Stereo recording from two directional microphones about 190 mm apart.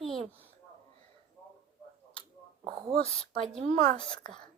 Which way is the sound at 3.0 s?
30° left (ahead or behind).